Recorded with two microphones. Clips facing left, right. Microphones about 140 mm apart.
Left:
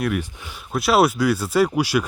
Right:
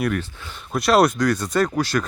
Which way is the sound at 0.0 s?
10° left (ahead or behind).